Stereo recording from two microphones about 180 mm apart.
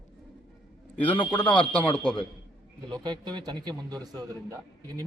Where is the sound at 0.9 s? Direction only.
10° left (ahead or behind).